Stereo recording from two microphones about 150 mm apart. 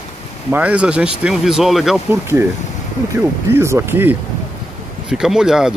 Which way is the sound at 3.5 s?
15° right (ahead or behind).